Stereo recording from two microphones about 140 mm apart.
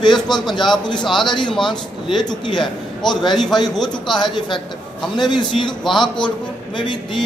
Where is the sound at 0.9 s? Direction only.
Centre (ahead or behind).